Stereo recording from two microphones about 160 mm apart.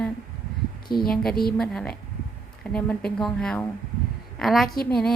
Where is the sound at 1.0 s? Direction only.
70° left (ahead or behind).